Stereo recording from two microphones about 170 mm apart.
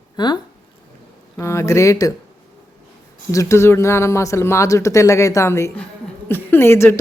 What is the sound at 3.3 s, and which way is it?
Speech, 20° left (ahead or behind).